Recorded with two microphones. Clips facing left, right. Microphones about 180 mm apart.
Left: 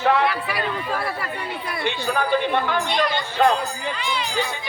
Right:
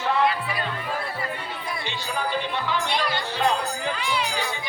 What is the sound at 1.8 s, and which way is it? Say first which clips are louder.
Speech: left 8 dB; 60° left (ahead or behind).